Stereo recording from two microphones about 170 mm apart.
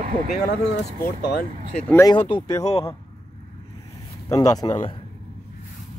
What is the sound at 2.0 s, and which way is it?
Speech, 30° left (ahead or behind).